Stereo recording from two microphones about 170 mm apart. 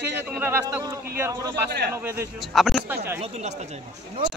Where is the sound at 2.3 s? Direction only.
Centre (ahead or behind).